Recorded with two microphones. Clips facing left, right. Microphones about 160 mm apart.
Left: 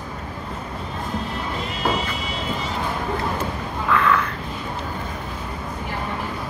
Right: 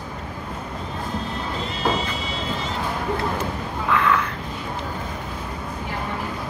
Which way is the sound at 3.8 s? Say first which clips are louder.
Left 1 dB; 15° right (ahead or behind).